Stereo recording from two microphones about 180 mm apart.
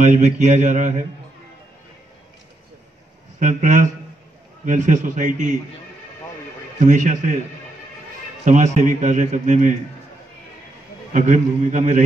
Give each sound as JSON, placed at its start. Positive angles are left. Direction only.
{"t": 0.0, "sound": "a man's voice", "side_deg": -40}
{"t": 3.3, "sound": "a man's voice", "side_deg": -45}
{"t": 6.8, "sound": "a man's voice", "side_deg": -45}
{"t": 8.5, "sound": "a man's voice", "side_deg": -40}
{"t": 11.1, "sound": "a man's voice", "side_deg": -45}